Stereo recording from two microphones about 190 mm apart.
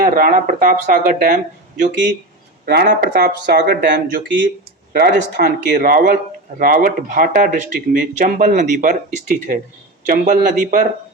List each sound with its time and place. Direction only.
0.0 s speech: 50° right (ahead or behind)